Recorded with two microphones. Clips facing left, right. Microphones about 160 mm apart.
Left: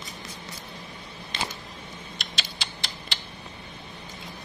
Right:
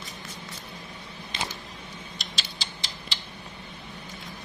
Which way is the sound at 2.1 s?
60° left (ahead or behind).